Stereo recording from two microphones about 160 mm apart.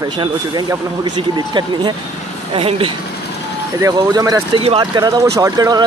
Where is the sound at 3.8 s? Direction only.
20° right (ahead or behind).